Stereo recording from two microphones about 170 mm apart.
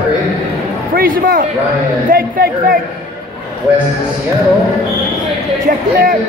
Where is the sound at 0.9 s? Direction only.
60° right (ahead or behind).